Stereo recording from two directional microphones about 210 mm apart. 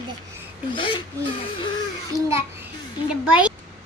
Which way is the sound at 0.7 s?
25° left (ahead or behind).